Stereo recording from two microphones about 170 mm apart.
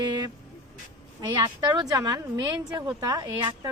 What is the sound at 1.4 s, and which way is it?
Speech, 25° right (ahead or behind).